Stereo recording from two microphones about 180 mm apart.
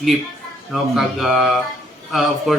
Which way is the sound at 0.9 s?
Centre (ahead or behind).